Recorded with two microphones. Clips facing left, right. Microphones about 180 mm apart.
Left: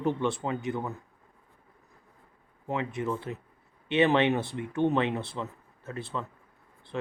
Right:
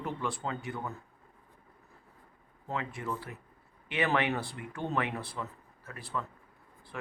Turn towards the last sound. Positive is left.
turn(degrees=25)  # may be behind; listen again after turning